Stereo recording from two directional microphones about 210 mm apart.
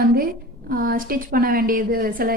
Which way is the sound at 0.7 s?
40° right (ahead or behind).